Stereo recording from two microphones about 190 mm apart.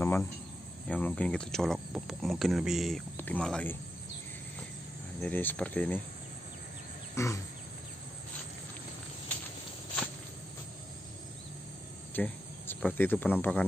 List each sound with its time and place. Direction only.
0.0 s cricket: 10° left (ahead or behind)
0.8 s speech: 5° left (ahead or behind)
5.2 s speech: 10° left (ahead or behind)
7.2 s speech: 15° left (ahead or behind)
12.1 s speech: 10° left (ahead or behind)